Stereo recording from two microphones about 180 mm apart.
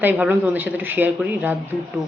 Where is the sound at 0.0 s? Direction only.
10° right (ahead or behind).